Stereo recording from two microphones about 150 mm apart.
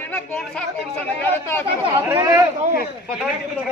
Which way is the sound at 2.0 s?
20° right (ahead or behind).